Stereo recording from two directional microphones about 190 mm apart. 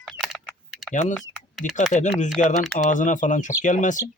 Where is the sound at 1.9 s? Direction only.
40° left (ahead or behind).